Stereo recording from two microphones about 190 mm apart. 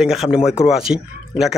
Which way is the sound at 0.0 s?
Centre (ahead or behind).